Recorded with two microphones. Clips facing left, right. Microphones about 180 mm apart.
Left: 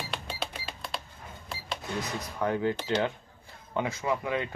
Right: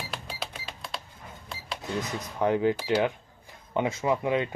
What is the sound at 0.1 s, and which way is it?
Cash register, centre (ahead or behind).